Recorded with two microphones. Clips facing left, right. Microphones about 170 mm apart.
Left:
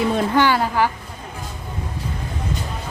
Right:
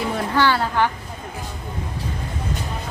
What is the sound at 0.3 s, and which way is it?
Speech, 15° left (ahead or behind).